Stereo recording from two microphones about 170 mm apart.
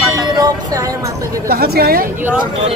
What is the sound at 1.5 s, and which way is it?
Speech, 65° right (ahead or behind).